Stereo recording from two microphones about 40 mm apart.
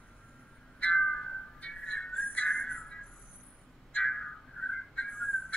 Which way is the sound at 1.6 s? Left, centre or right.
Left.